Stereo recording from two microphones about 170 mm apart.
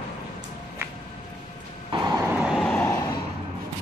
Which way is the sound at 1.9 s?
25° right (ahead or behind).